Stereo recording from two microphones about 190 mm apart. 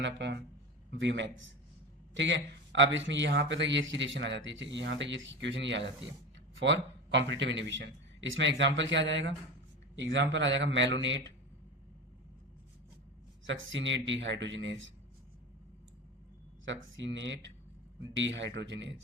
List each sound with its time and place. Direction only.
0.0 s a man's voice: 65° right (ahead or behind)
13.5 s a man's voice: 80° right
16.6 s a man's voice: 75° right (ahead or behind)